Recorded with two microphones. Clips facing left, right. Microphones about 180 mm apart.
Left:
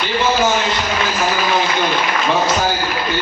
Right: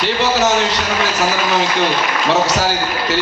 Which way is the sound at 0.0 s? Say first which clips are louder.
Right 1 dB; 80° right.